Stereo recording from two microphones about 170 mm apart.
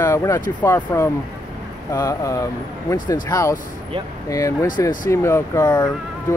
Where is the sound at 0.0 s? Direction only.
15° left (ahead or behind).